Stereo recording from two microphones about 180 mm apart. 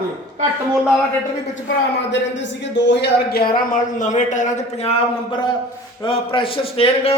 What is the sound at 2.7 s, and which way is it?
A man's voice, 75° left (ahead or behind).